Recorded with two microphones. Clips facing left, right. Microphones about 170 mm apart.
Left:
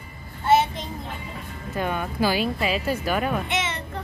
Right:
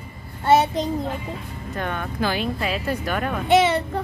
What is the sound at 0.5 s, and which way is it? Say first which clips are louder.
Speech: right 3 dB; 40° right (ahead or behind).